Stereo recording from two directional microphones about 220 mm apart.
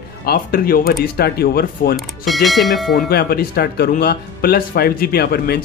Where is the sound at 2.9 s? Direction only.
45° left (ahead or behind).